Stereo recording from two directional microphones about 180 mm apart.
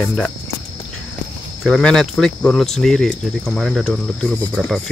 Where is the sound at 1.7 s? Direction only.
Centre (ahead or behind).